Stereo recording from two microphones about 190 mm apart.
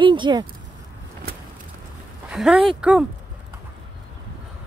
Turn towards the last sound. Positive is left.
turn(degrees=-5)  # may be behind; listen again after turning